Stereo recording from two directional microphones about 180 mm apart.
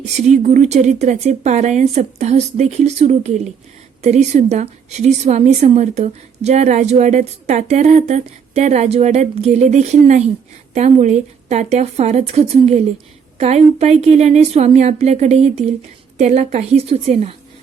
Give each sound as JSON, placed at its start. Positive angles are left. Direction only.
{"t": 0.0, "sound": "a woman's voice", "side_deg": -40}